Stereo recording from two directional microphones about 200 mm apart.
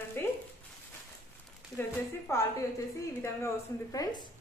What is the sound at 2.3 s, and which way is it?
A woman's voice, 15° left (ahead or behind).